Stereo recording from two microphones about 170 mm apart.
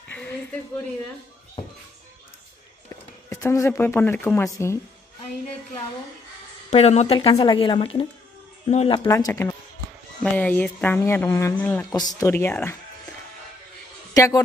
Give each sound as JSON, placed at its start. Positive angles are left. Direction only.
{"t": 0.1, "sound": "a sound", "side_deg": 10}
{"t": 2.9, "sound": "speech", "side_deg": 20}
{"t": 6.7, "sound": "speech", "side_deg": 40}
{"t": 7.2, "sound": "speech", "side_deg": 25}
{"t": 9.0, "sound": "speech", "side_deg": 20}
{"t": 11.8, "sound": "speech", "side_deg": 20}
{"t": 14.1, "sound": "a man's voice", "side_deg": 20}